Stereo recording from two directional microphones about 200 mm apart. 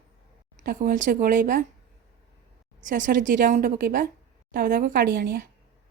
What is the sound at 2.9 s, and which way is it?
Speech, 40° right (ahead or behind).